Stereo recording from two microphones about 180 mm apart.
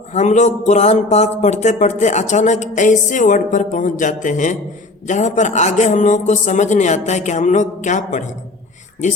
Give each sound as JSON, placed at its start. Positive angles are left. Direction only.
{"t": 0.1, "sound": "speech", "side_deg": 40}